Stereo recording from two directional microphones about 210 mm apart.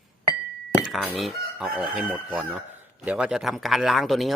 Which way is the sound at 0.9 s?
Centre (ahead or behind).